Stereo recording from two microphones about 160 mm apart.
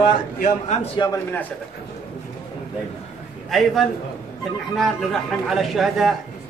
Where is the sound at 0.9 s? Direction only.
25° left (ahead or behind).